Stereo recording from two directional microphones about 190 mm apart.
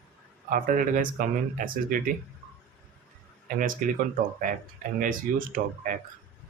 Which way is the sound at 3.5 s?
45° right (ahead or behind).